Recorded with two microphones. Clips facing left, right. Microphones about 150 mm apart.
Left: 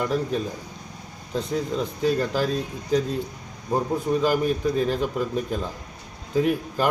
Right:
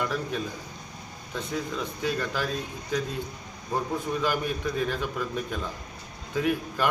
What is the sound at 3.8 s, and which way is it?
A man's voice, 35° left (ahead or behind).